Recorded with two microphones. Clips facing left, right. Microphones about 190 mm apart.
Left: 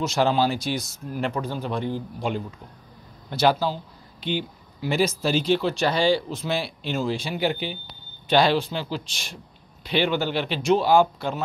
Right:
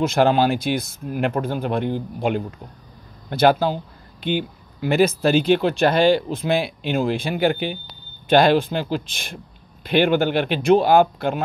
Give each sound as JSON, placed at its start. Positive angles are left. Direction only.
{"t": 0.0, "sound": "speech", "side_deg": -55}